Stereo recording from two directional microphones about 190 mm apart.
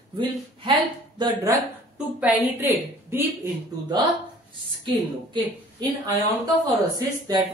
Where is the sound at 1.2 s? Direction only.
20° right (ahead or behind).